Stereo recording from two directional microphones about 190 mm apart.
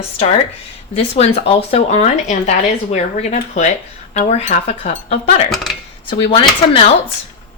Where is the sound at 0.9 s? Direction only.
30° left (ahead or behind).